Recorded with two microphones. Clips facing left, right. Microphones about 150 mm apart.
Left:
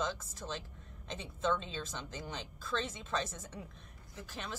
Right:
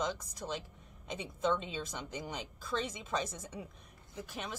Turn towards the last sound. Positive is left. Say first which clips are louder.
# right 2 dB
turn(degrees=-15)  # may be behind; listen again after turning